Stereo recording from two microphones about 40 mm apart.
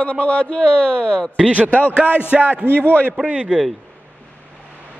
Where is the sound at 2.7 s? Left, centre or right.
Left.